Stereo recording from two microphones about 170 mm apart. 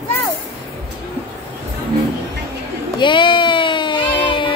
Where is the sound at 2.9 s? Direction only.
30° left (ahead or behind).